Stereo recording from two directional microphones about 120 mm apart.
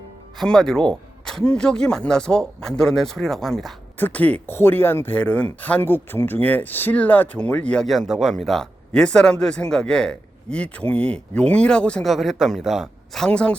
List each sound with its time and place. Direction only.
0.3 s speech: 5° left (ahead or behind)
3.9 s speech: 15° left (ahead or behind)